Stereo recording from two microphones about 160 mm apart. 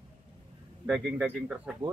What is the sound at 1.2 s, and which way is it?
Speech, 5° right (ahead or behind).